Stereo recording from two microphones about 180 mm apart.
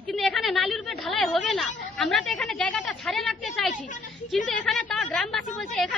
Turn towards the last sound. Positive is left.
turn(degrees=0)  # may be behind; listen again after turning